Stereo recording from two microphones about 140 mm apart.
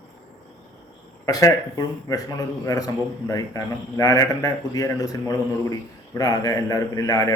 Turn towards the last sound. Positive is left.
turn(degrees=25)  # may be behind; listen again after turning